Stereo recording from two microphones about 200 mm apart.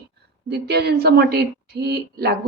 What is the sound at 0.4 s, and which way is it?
Speech, 55° right (ahead or behind).